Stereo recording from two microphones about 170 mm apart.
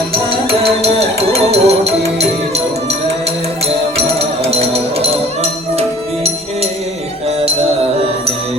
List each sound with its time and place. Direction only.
0.6 s music: 40° right (ahead or behind)
4.2 s music: 35° right (ahead or behind)